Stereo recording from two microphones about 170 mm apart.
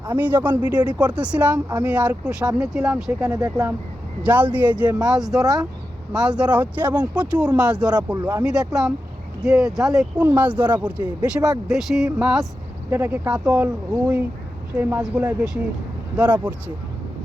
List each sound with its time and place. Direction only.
0.0 s speech: 10° right (ahead or behind)
8.1 s speech: 25° right (ahead or behind)
8.4 s speech: 5° right (ahead or behind)
11.0 s speech: 25° right (ahead or behind)
11.7 s speech: centre (ahead or behind)
14.8 s speech: 10° right (ahead or behind)